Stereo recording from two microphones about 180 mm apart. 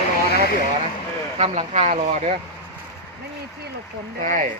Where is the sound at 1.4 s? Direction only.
40° right (ahead or behind).